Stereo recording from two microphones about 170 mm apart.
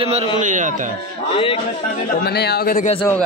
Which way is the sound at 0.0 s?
35° right (ahead or behind).